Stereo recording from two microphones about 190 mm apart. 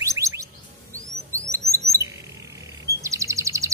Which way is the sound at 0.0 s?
15° right (ahead or behind).